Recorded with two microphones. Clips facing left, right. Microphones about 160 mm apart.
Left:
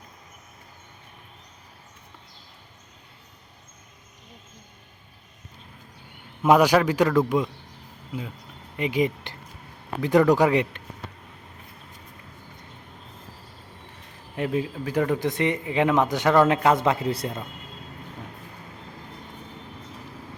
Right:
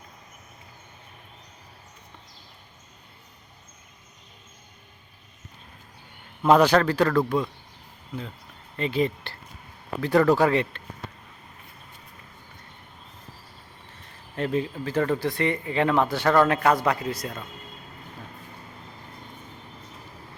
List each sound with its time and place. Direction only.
6.4 s speech: 10° left (ahead or behind)
8.7 s speech: 15° left (ahead or behind)
14.3 s speech: 10° left (ahead or behind); by 17.4 s 30° left (ahead or behind)